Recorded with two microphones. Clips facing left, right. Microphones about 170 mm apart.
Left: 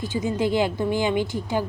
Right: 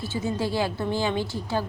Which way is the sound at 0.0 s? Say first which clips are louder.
Left 4 dB; 15° left (ahead or behind).